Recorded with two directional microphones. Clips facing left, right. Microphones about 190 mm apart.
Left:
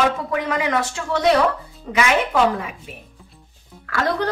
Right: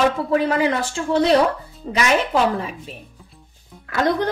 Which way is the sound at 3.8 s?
20° right (ahead or behind).